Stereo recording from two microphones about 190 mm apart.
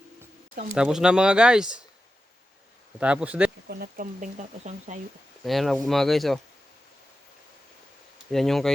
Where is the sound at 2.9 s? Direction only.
5° right (ahead or behind).